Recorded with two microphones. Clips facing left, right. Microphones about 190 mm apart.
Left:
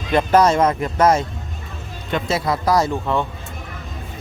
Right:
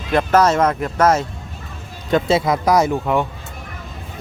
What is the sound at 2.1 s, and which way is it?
Speech, 30° right (ahead or behind).